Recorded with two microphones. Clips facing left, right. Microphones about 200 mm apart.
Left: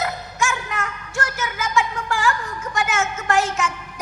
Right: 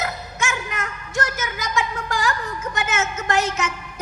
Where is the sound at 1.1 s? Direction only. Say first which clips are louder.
Right 2 dB; 20° right (ahead or behind).